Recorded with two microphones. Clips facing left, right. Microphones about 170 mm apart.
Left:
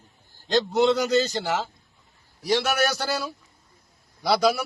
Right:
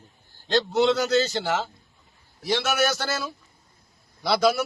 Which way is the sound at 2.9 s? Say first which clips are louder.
Left 1 dB; 5° left (ahead or behind).